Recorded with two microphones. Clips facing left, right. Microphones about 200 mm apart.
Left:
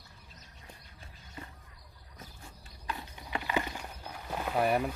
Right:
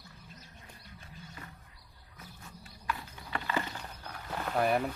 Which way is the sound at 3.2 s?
15° left (ahead or behind).